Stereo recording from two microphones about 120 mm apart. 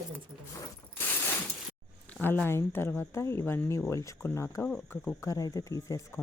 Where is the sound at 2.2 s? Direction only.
15° left (ahead or behind).